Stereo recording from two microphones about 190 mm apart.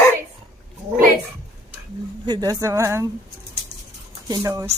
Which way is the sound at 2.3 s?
20° right (ahead or behind).